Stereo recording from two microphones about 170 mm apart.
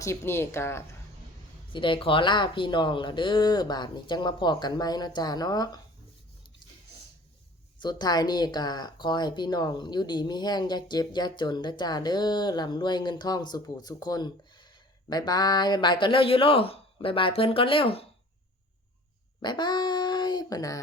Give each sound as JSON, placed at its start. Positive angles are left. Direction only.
{"t": 0.0, "sound": "speech", "side_deg": 15}
{"t": 1.7, "sound": "speech", "side_deg": 30}
{"t": 7.8, "sound": "speech", "side_deg": 25}
{"t": 19.4, "sound": "dog", "side_deg": 25}